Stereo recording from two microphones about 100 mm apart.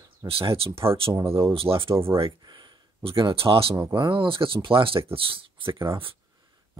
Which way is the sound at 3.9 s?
55° right (ahead or behind).